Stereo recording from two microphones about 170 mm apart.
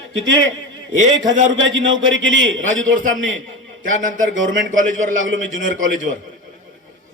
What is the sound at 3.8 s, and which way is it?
A man's voice, 50° right (ahead or behind).